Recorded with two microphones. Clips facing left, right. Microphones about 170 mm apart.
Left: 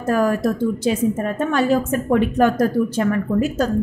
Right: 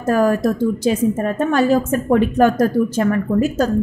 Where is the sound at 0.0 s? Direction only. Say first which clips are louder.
Right 2 dB; 40° right (ahead or behind).